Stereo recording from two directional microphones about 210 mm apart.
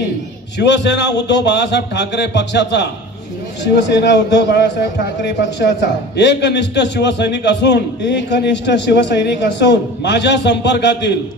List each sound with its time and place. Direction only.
0.6 s a man's voice: 55° left (ahead or behind)